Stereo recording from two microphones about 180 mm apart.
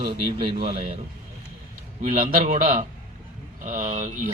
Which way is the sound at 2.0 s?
50° right (ahead or behind).